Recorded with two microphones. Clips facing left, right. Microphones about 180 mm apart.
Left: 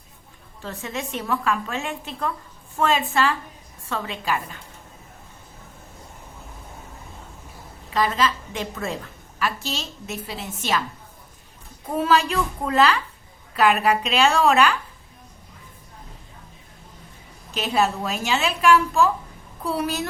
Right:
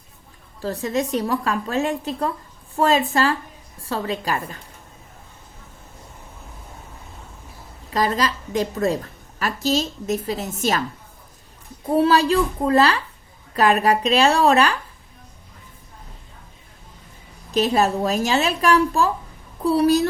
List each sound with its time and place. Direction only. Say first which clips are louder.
0.6 s a woman's voice: right 8 dB; 35° right (ahead or behind)
7.9 s a woman's voice: right 1 dB; 40° right (ahead or behind)
11.9 s a woman's voice: right 4 dB; 35° right (ahead or behind)
17.5 s a woman's voice: right 4 dB; 40° right (ahead or behind)